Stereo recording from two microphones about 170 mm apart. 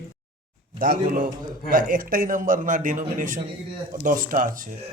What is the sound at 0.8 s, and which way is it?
A man's voice, 55° right (ahead or behind).